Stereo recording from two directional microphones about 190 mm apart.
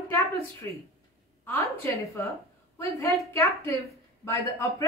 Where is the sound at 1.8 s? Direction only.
15° left (ahead or behind).